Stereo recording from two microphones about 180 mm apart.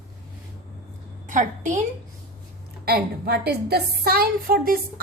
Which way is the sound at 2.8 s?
60° right (ahead or behind).